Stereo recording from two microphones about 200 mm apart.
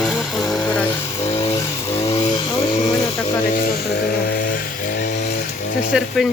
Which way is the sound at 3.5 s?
50° left (ahead or behind).